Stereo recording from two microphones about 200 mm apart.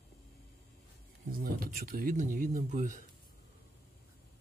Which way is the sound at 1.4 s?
45° right (ahead or behind).